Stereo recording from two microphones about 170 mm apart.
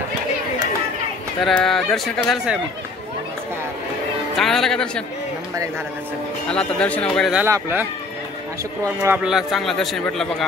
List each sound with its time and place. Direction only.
1.4 s speech: centre (ahead or behind)
4.4 s speech: centre (ahead or behind)
6.5 s speech: 5° left (ahead or behind)
7.4 s speech: 15° right (ahead or behind)
8.8 s speech: 15° right (ahead or behind)
9.2 s speech: 5° right (ahead or behind)